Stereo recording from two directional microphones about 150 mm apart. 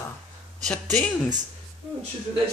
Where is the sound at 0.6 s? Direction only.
5° left (ahead or behind).